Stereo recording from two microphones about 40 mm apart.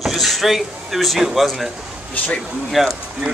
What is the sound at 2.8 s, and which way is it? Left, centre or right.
Speech, centre.